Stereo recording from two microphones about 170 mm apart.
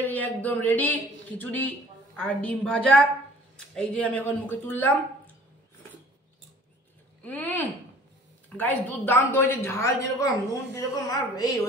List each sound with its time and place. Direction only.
0.0 s a woman's voice: 10° left (ahead or behind)
7.2 s a sound: 10° left (ahead or behind)
8.5 s a woman's voice: 10° left (ahead or behind)